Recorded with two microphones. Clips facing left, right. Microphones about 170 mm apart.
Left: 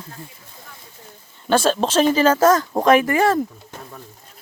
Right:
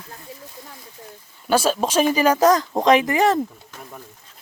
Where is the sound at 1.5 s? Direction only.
10° right (ahead or behind).